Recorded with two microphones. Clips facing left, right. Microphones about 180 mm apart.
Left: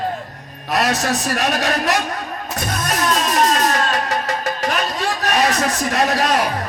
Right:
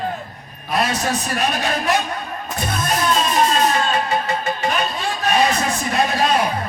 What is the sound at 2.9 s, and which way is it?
Music, 80° left.